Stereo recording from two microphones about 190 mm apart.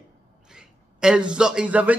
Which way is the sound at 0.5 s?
5° right (ahead or behind).